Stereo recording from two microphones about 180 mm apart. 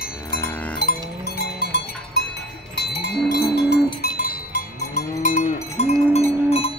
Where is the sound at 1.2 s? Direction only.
65° left (ahead or behind).